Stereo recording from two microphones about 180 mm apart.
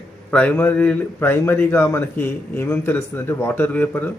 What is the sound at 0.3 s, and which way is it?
A man's voice, 10° left (ahead or behind).